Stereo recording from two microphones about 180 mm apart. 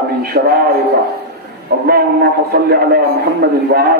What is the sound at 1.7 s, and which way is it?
A man's voice, 60° right (ahead or behind).